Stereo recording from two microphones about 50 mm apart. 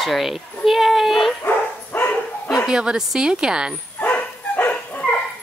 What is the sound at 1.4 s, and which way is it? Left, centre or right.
Bow-wow, left.